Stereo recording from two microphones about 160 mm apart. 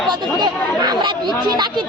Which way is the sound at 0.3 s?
25° right (ahead or behind).